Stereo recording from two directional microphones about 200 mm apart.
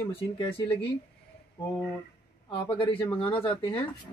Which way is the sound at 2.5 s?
25° left (ahead or behind).